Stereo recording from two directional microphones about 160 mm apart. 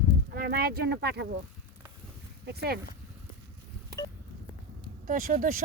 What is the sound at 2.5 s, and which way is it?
Speech, 80° right.